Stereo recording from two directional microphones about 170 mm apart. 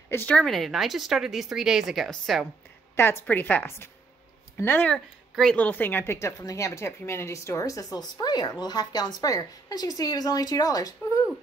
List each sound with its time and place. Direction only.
0.1 s speech: 10° left (ahead or behind)
3.0 s a woman's voice: 15° left (ahead or behind)